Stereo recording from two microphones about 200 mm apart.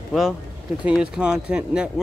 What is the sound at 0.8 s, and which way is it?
Speech, 5° right (ahead or behind).